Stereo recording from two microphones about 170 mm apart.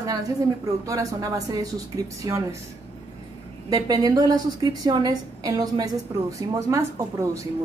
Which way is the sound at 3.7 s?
20° right (ahead or behind).